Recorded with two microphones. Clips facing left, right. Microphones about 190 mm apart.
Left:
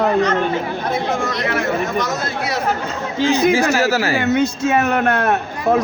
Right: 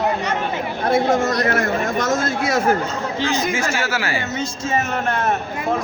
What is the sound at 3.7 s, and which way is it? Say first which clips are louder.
Speech: left 6 dB; 40° left (ahead or behind).